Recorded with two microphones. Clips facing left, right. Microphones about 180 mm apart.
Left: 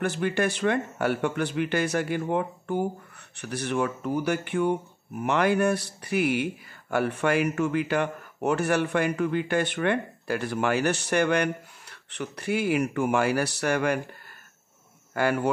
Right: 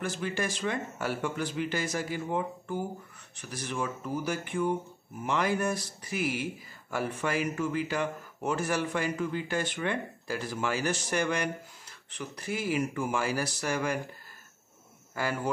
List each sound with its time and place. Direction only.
0.0 s speech: 60° left (ahead or behind)
15.1 s speech: 65° left (ahead or behind)